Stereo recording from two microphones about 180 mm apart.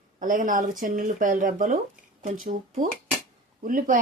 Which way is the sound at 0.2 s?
45° right (ahead or behind).